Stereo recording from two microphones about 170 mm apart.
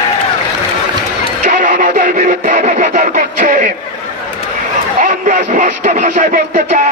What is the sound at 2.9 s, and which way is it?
Vehicle, 55° right (ahead or behind).